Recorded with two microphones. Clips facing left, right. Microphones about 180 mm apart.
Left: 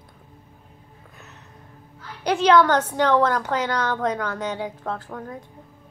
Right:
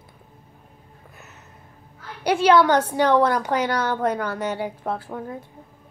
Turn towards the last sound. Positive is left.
turn(degrees=-10)  # may be behind; listen again after turning